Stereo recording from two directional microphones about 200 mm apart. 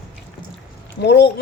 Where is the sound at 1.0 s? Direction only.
60° left (ahead or behind).